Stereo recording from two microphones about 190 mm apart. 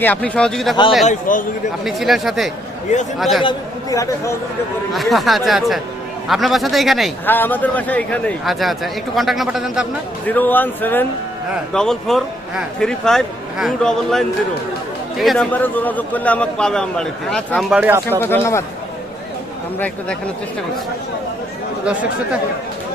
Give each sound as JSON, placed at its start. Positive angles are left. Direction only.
{"t": 0.0, "sound": "a man's voice", "side_deg": 5}
{"t": 1.0, "sound": "a man's voice", "side_deg": 45}
{"t": 1.8, "sound": "a man's voice", "side_deg": 0}
{"t": 3.4, "sound": "speech", "side_deg": 20}
{"t": 4.9, "sound": "a man's voice", "side_deg": 0}
{"t": 7.3, "sound": "a man's voice", "side_deg": 10}
{"t": 10.2, "sound": "a man's voice", "side_deg": 10}
{"t": 18.1, "sound": "speech", "side_deg": 10}
{"t": 19.8, "sound": "a man's voice", "side_deg": 5}